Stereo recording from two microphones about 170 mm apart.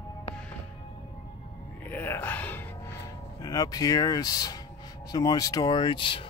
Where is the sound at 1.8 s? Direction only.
10° left (ahead or behind).